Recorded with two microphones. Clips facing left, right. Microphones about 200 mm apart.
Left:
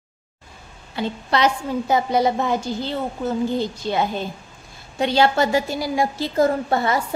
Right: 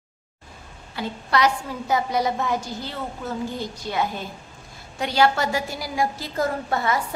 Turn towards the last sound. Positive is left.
turn(degrees=30)  # may be behind; listen again after turning